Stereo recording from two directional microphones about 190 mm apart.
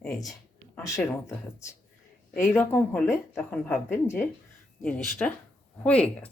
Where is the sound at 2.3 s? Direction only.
15° left (ahead or behind).